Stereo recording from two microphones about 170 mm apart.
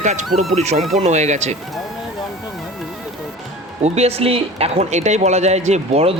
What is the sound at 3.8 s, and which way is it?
Speech, 40° right (ahead or behind).